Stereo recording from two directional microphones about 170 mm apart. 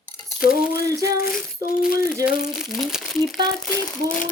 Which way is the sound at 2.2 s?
5° right (ahead or behind).